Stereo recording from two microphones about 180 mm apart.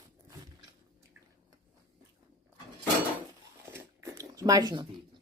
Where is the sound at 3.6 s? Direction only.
15° right (ahead or behind).